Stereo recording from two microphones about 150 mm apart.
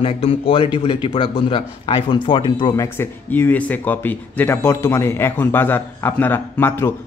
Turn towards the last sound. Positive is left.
turn(degrees=15)  # may be behind; listen again after turning